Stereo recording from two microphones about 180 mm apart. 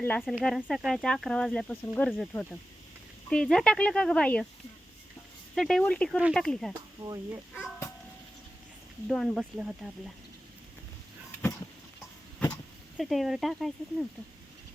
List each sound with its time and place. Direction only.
0.2 s speech: centre (ahead or behind)
5.5 s speech: centre (ahead or behind)
7.0 s speech: 20° right (ahead or behind)
9.0 s speech: centre (ahead or behind)
13.0 s speech: centre (ahead or behind)